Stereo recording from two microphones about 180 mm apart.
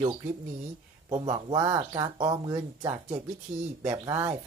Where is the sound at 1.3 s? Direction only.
30° right (ahead or behind); by 4.3 s 15° right (ahead or behind).